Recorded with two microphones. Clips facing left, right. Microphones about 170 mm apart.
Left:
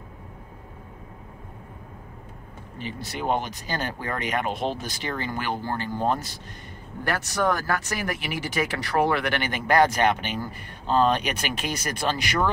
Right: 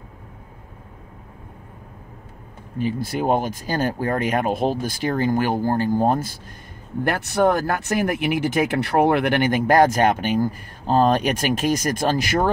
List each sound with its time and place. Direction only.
2.8 s speech: 45° right (ahead or behind)